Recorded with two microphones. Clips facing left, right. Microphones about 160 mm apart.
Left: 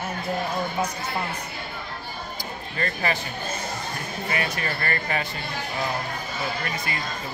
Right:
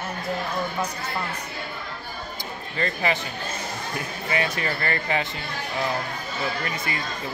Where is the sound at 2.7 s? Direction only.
25° right (ahead or behind).